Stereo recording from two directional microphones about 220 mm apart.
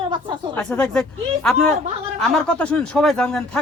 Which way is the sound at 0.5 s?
5° left (ahead or behind).